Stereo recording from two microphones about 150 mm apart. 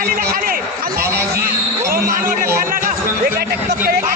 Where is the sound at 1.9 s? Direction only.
70° right (ahead or behind).